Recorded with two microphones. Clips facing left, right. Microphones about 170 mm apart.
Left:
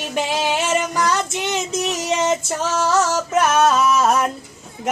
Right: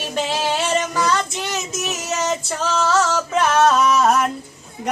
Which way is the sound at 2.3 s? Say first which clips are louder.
Left 1 dB; 15° left (ahead or behind).